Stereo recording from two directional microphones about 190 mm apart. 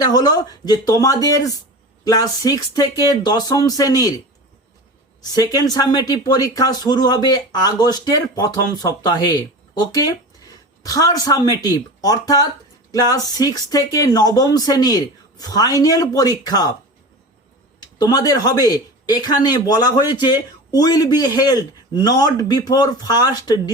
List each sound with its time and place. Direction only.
0.0 s speech: 20° left (ahead or behind)
5.2 s speech: 20° left (ahead or behind)
17.7 s speech: 20° left (ahead or behind)